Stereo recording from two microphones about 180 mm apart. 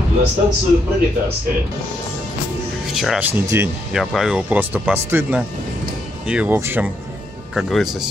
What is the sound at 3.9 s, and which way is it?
Speech, centre (ahead or behind).